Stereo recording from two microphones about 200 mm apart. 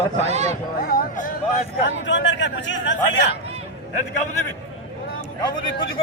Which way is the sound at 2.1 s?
65° left (ahead or behind).